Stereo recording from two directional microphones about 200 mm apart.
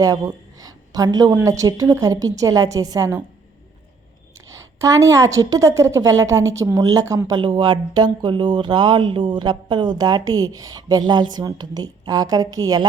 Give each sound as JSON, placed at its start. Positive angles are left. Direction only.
{"t": 0.0, "sound": "a woman's voice", "side_deg": -15}
{"t": 4.5, "sound": "a woman's voice", "side_deg": -15}